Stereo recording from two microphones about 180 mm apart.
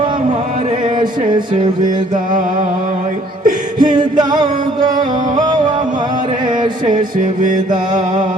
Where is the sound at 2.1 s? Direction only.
45° right (ahead or behind).